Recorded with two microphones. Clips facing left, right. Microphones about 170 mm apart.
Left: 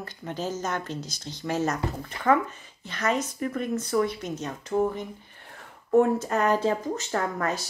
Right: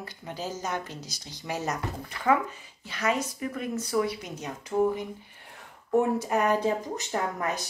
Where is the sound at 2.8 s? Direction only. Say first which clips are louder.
Left 1 dB; 10° right (ahead or behind).